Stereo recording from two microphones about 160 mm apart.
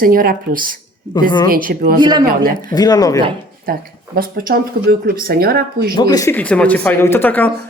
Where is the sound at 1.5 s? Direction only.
60° right (ahead or behind).